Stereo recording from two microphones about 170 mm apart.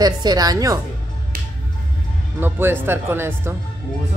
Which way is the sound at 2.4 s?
15° right (ahead or behind).